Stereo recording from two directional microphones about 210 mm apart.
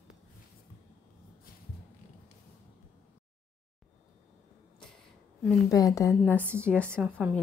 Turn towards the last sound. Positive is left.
turn(degrees=-5)  # may be behind; listen again after turning